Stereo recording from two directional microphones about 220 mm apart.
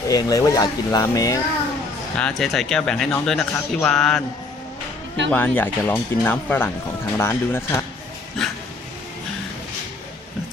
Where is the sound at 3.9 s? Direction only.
Centre (ahead or behind).